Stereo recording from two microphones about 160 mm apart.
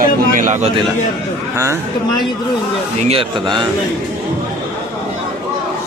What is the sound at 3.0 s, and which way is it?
Speech, 35° right (ahead or behind).